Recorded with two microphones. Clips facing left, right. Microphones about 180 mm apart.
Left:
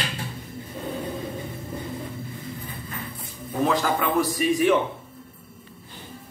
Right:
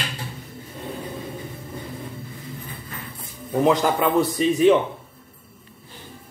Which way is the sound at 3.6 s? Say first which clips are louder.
Right 4 dB; 20° right (ahead or behind).